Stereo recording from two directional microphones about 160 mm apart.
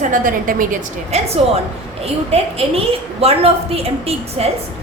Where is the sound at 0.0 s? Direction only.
55° right (ahead or behind).